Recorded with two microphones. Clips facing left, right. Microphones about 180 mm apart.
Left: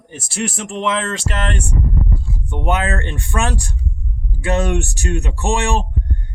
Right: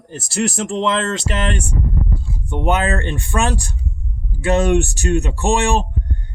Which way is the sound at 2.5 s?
30° right (ahead or behind).